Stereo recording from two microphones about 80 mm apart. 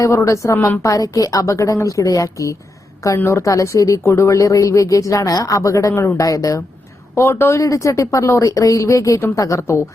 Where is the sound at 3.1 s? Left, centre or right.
Left.